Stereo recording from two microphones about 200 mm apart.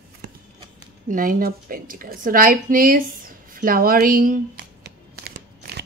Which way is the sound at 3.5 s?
45° right (ahead or behind).